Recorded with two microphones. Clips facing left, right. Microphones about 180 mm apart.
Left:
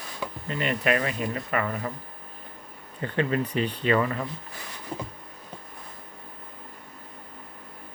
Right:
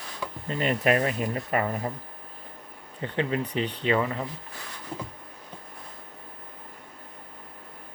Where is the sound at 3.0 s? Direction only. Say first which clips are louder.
Left 2 dB; 20° right (ahead or behind).